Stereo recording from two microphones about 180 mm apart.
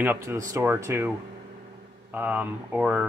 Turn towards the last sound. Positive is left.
turn(degrees=-5)  # may be behind; listen again after turning